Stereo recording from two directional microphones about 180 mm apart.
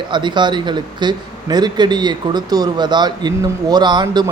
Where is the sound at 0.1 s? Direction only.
25° right (ahead or behind).